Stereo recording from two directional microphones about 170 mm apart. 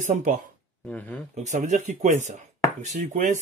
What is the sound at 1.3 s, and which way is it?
Speech, 45° right (ahead or behind).